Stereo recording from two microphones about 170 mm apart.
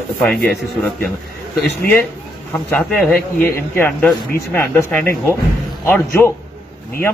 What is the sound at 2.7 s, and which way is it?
Speech, 5° left (ahead or behind).